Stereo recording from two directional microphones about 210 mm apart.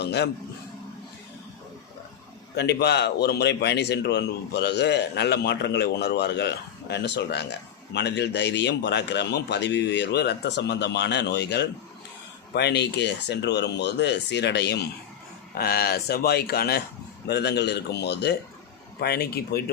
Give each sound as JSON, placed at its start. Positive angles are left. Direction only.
{"t": 0.0, "sound": "a man's voice", "side_deg": 55}
{"t": 2.6, "sound": "a man's voice", "side_deg": 50}